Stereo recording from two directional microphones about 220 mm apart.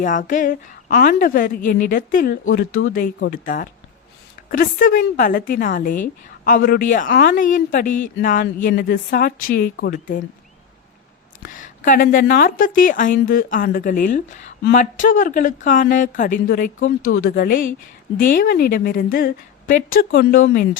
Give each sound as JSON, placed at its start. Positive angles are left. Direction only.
{"t": 0.0, "sound": "a woman's voice", "side_deg": 35}
{"t": 11.4, "sound": "a woman's voice", "side_deg": 35}
{"t": 17.0, "sound": "speech", "side_deg": 75}
{"t": 17.2, "sound": "a woman's voice", "side_deg": 40}